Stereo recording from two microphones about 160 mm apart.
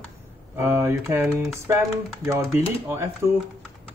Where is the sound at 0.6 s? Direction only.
15° right (ahead or behind).